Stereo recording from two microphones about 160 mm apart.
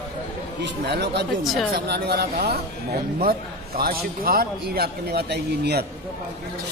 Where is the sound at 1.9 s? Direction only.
80° right.